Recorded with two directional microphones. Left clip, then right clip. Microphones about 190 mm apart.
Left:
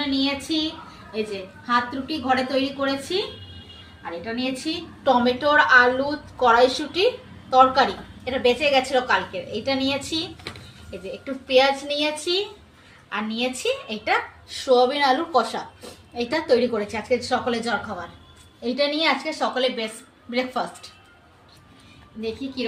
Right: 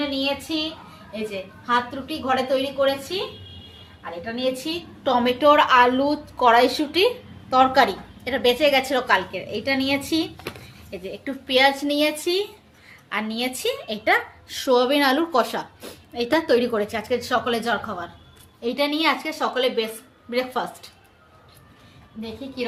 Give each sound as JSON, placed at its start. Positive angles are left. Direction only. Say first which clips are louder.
{"t": 0.4, "sound": "a woman's voice", "louder": "left 1 dB", "side_deg": -20}
{"t": 4.4, "sound": "a woman's voice", "louder": "right 4 dB", "side_deg": -25}
{"t": 5.4, "sound": "a woman's voice", "louder": "right 2 dB", "side_deg": -45}
{"t": 11.4, "sound": "a woman's voice", "louder": "even", "side_deg": -40}
{"t": 14.6, "sound": "a woman's voice", "louder": "even", "side_deg": -55}